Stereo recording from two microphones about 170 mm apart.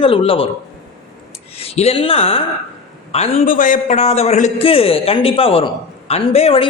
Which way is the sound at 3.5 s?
50° left (ahead or behind).